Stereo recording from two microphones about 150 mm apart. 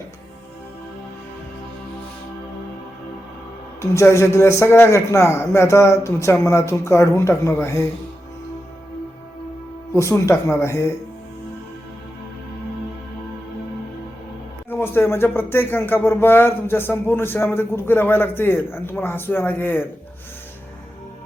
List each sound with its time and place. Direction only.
3.8 s a man's voice: 20° left (ahead or behind)
9.9 s a man's voice: 20° left (ahead or behind)
14.7 s speech: 15° left (ahead or behind)